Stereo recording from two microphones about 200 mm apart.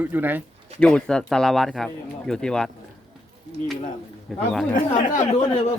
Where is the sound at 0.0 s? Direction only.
10° right (ahead or behind).